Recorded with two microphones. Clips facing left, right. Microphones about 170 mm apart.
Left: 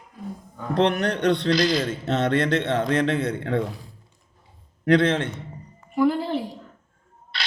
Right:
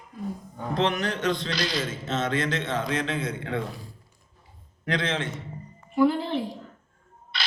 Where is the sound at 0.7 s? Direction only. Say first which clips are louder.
Left 5 dB; 65° left (ahead or behind).